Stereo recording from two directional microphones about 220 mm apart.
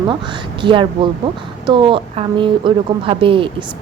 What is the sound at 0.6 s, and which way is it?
Speech, 20° right (ahead or behind).